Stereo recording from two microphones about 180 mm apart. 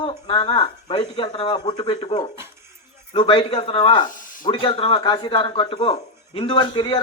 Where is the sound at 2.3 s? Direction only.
15° right (ahead or behind).